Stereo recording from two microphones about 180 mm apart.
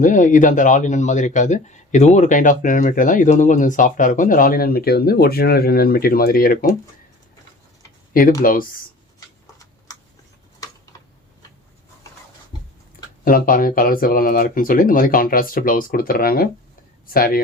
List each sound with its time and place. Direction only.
0.0 s speech: 45° left (ahead or behind)
8.4 s speech: 50° left (ahead or behind)
12.5 s a sound: 25° left (ahead or behind)
13.2 s speech: 50° left (ahead or behind)